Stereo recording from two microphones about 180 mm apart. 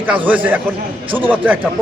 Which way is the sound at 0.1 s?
10° right (ahead or behind).